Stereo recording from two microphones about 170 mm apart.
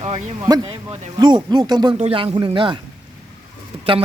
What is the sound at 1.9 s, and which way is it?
Speech, 35° right (ahead or behind).